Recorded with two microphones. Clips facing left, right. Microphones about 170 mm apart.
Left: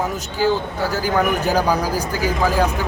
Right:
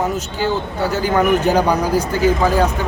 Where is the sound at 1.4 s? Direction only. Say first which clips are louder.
Right 3 dB; 5° left (ahead or behind).